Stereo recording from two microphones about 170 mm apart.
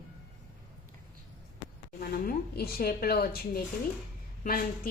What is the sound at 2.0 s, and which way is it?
A woman's voice, 60° left (ahead or behind).